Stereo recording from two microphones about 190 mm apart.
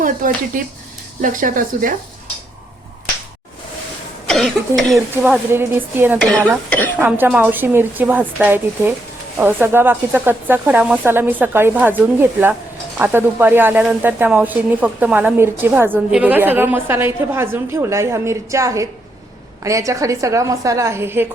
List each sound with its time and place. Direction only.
0.0 s speech: 45° right (ahead or behind)
4.3 s speech: centre (ahead or behind)
6.7 s a woman's voice: 10° left (ahead or behind)
7.0 s a woman's voice: 10° right (ahead or behind)